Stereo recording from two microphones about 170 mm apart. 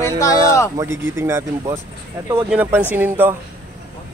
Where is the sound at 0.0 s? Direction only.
20° left (ahead or behind).